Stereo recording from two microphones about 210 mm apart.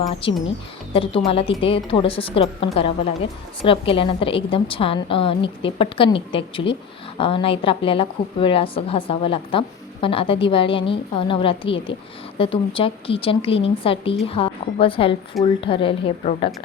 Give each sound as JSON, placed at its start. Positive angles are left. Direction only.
{"t": 0.0, "sound": "a woman's voice", "side_deg": 25}